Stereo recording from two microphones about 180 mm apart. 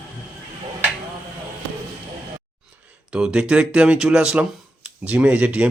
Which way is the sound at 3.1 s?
5° right (ahead or behind).